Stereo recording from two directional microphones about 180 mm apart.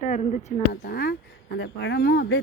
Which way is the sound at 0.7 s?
60° left (ahead or behind).